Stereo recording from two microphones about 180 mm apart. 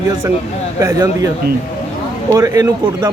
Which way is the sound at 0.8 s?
20° right (ahead or behind).